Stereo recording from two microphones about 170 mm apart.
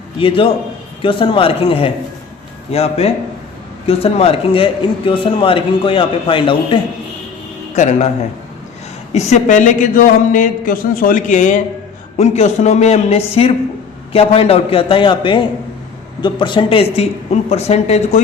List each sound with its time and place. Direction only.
0.2 s a man's voice: 30° left (ahead or behind)
7.8 s a man's voice: 40° left (ahead or behind)
9.1 s a man's voice: 45° left (ahead or behind)